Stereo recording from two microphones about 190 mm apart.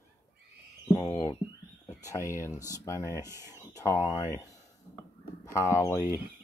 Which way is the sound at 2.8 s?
15° left (ahead or behind).